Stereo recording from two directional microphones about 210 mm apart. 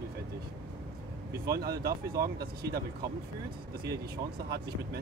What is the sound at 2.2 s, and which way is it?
Speech, 50° right (ahead or behind).